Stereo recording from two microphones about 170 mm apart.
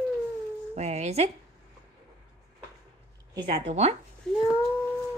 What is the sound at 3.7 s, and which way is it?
Speech, 40° right (ahead or behind).